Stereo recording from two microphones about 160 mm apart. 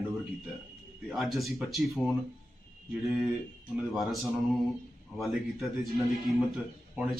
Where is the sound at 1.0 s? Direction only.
Centre (ahead or behind).